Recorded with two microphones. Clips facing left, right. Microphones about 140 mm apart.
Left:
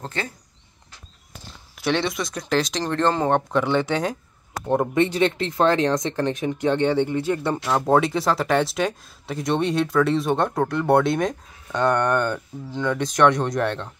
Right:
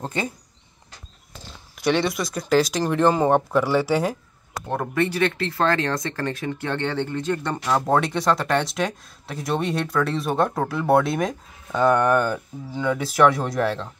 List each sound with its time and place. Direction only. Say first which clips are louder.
0.0 s speech: right 3 dB; 15° right (ahead or behind)
1.8 s speech: right 2 dB; centre (ahead or behind)
4.7 s speech: left 3 dB; 20° left (ahead or behind); by 13.8 s 5° right (ahead or behind)